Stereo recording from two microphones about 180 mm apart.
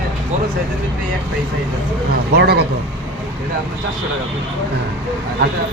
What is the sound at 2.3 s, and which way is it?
Speech, 65° right (ahead or behind).